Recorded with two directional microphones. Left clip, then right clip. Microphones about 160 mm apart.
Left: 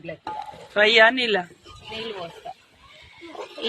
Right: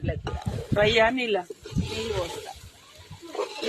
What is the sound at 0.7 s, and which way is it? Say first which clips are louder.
Speech: left 5 dB; 5° left (ahead or behind).